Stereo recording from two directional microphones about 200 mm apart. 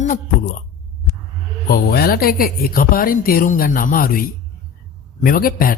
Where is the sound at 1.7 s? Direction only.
50° left (ahead or behind).